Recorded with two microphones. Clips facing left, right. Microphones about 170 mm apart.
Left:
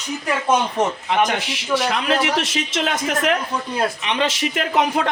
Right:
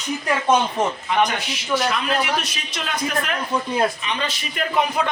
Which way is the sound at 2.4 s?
90° left.